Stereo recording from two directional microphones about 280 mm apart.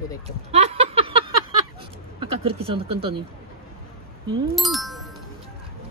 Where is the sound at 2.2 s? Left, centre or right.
Centre.